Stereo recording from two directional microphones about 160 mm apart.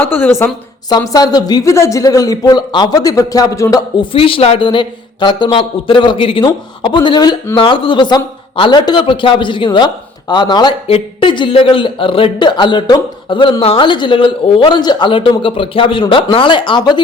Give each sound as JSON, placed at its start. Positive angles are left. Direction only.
{"t": 0.0, "sound": "a woman's voice", "side_deg": 15}